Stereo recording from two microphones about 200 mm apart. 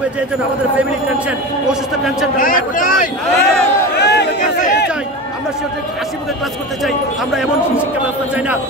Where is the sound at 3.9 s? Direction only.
55° left (ahead or behind).